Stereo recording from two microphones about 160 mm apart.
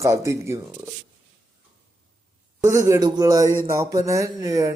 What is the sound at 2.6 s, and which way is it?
Speech, 15° right (ahead or behind).